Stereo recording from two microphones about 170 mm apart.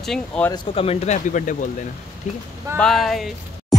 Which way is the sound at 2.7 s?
Centre (ahead or behind).